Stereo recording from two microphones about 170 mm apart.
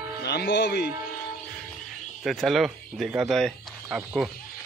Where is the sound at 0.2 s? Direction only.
75° left (ahead or behind).